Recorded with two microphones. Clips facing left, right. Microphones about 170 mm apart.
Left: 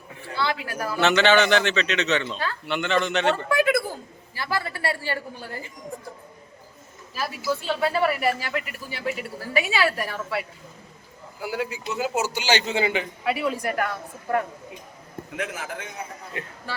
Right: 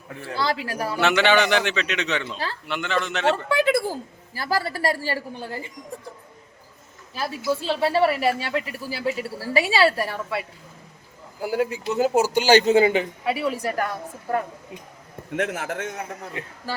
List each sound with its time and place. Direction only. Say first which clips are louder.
0.3 s a woman's voice: right 2 dB; 35° right (ahead or behind)
0.9 s a man's voice: left 1 dB; 10° right (ahead or behind)
3.5 s a woman's voice: right 1 dB; 30° right (ahead or behind)
7.2 s speech: right 2 dB; 30° right (ahead or behind)
11.3 s a woman's voice: right 5 dB; 45° right (ahead or behind)
13.2 s a woman's voice: right 1 dB; 30° right (ahead or behind)
15.4 s a man's voice: right 6 dB; 60° right (ahead or behind)